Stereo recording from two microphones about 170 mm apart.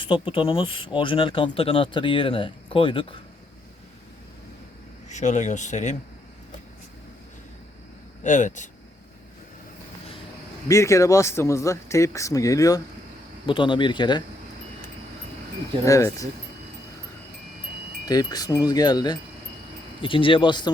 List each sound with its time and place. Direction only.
0.0 s speech: 30° left (ahead or behind)
5.0 s speech: 45° left (ahead or behind)
8.2 s speech: 45° left (ahead or behind)
10.7 s speech: 20° left (ahead or behind)
15.8 s speech: 20° left (ahead or behind)
18.1 s speech: 25° left (ahead or behind)